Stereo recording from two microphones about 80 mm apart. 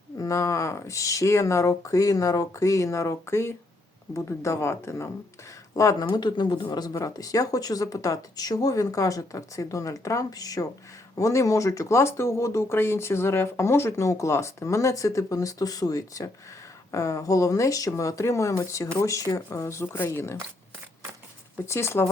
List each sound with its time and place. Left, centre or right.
0.2 s speech: left
6.1 s speech: left
21.7 s speech: left